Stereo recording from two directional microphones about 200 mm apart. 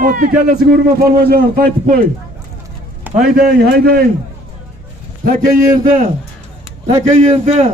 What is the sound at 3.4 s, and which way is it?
Speech, 50° right (ahead or behind).